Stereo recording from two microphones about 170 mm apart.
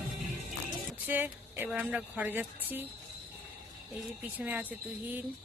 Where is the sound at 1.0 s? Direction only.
10° right (ahead or behind).